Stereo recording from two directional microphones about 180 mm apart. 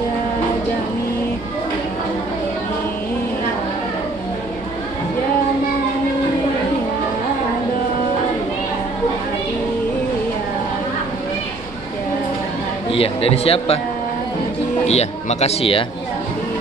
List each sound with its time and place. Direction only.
12.9 s speech: 30° left (ahead or behind)
14.9 s speech: 35° left (ahead or behind)